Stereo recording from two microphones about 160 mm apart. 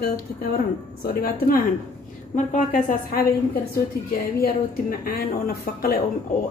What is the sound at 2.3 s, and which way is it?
Speech, 50° left (ahead or behind).